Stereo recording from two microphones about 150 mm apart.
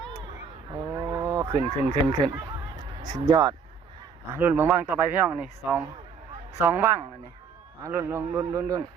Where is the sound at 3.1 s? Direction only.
25° right (ahead or behind).